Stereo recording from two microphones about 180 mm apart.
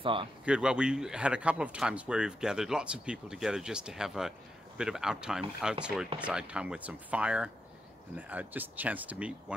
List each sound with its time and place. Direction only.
0.0 s speech: 30° right (ahead or behind)
0.5 s speech: 5° right (ahead or behind)